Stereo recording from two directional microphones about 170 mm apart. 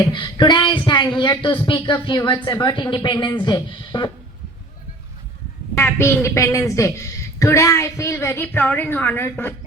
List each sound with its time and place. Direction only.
0.1 s speech: 25° left (ahead or behind)
5.7 s a woman's voice: 15° left (ahead or behind)